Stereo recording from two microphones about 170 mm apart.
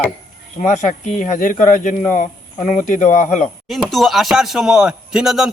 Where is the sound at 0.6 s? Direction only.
45° left (ahead or behind).